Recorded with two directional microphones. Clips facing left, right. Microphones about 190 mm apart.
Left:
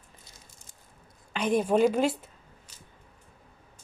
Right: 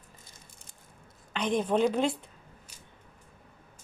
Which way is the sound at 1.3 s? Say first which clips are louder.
Left 3 dB; 10° left (ahead or behind).